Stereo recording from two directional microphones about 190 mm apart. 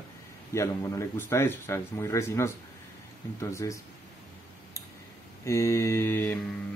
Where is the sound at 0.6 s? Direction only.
15° left (ahead or behind).